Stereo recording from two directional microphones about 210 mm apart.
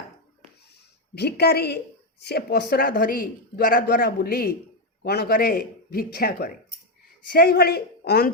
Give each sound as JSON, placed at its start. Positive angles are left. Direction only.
{"t": 1.1, "sound": "a woman's voice", "side_deg": 50}